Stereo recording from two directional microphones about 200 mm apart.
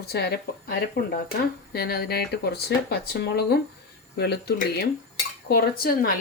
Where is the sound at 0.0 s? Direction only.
55° left (ahead or behind).